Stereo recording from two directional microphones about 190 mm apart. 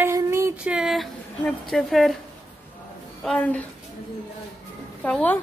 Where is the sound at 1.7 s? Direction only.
Centre (ahead or behind).